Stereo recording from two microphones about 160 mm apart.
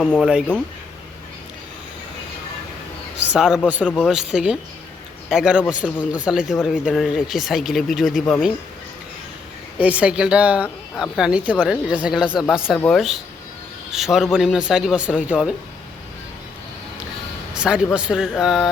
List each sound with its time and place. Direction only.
0.0 s speech: 5° left (ahead or behind)
3.2 s a man's voice: 5° right (ahead or behind)
9.7 s speech: 10° right (ahead or behind)
17.6 s speech: 5° right (ahead or behind)